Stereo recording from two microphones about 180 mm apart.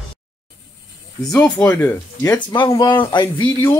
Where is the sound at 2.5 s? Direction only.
25° left (ahead or behind).